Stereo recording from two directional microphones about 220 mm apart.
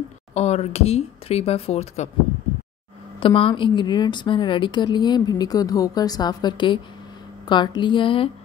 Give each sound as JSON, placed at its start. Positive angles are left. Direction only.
{"t": 0.3, "sound": "a woman's voice", "side_deg": 30}
{"t": 3.2, "sound": "a woman's voice", "side_deg": 25}